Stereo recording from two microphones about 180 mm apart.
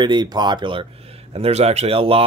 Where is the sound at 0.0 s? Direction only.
25° right (ahead or behind).